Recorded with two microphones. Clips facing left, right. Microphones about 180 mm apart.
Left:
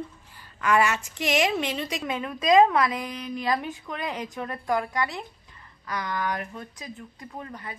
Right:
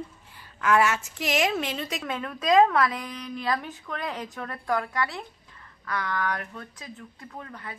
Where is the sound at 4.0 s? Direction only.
Centre (ahead or behind).